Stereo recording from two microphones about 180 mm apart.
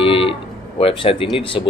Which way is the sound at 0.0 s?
30° left (ahead or behind).